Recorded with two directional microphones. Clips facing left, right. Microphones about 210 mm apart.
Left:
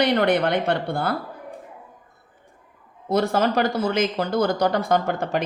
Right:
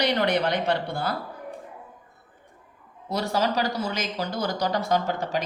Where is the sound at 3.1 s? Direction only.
55° left (ahead or behind).